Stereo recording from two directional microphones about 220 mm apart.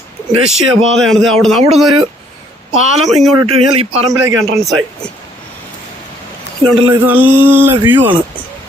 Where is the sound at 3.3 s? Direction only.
25° right (ahead or behind).